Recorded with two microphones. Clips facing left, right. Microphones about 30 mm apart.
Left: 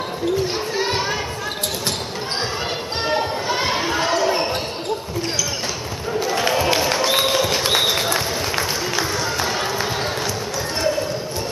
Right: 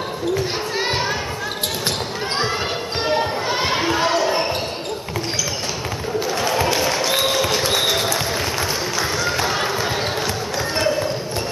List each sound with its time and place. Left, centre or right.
0.7 s children playing: centre
3.0 s basketball bounce: centre
6.9 s a sound: centre
7.6 s applause: centre
9.5 s basketball bounce: centre